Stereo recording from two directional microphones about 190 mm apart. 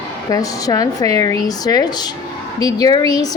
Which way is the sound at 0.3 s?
20° left (ahead or behind).